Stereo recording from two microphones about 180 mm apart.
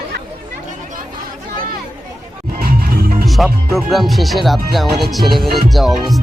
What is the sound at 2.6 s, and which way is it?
Music, 55° right (ahead or behind).